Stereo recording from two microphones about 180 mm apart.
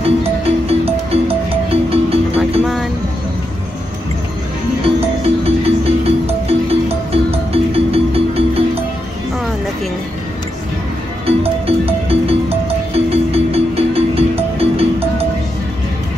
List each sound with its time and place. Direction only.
0.0 s music: 35° right (ahead or behind)
2.6 s a sound: centre (ahead or behind)
4.8 s music: 35° right (ahead or behind)
11.2 s music: 35° right (ahead or behind)